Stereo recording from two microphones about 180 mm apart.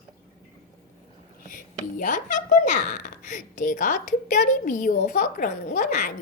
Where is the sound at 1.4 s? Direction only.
45° left (ahead or behind).